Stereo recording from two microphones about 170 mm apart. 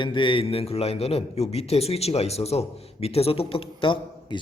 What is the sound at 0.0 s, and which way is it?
A man's voice, 30° left (ahead or behind).